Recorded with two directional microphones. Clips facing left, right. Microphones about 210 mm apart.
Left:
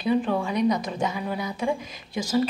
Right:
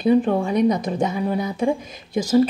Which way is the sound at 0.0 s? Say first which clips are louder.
Right 6 dB; 45° right (ahead or behind).